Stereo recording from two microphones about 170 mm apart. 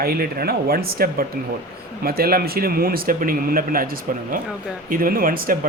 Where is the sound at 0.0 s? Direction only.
60° right (ahead or behind).